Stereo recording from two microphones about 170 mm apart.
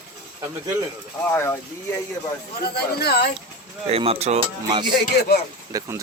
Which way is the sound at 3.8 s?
35° right (ahead or behind).